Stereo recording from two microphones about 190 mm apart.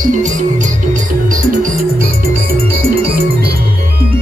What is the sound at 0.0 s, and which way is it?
Music, 40° right (ahead or behind).